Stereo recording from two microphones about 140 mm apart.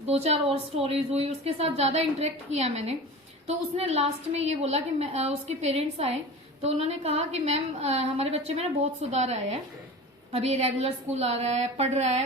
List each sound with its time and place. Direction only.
0.0 s a woman's voice: 50° right (ahead or behind)